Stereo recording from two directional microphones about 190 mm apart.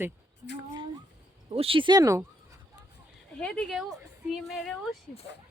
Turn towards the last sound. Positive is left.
turn(degrees=0)  # may be behind; listen again after turning